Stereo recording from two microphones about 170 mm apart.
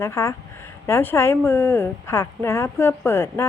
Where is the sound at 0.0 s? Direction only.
15° left (ahead or behind).